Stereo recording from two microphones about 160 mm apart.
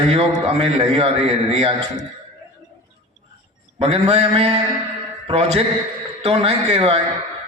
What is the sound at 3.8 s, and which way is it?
A man's voice, 40° right (ahead or behind).